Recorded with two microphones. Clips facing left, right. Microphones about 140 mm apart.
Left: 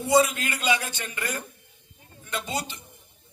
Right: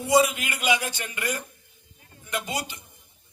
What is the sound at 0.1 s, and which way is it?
A man's voice, 15° right (ahead or behind).